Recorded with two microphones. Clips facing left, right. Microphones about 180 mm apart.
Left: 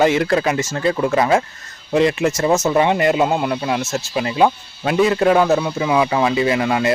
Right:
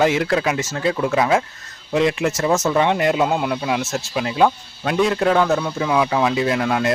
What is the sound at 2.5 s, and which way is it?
Speech, 20° left (ahead or behind).